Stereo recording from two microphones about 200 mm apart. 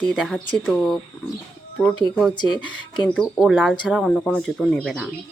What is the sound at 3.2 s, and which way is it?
Speech, centre (ahead or behind).